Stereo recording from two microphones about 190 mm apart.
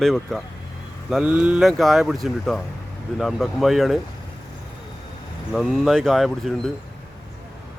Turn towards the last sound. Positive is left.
turn(degrees=0)  # may be behind; listen again after turning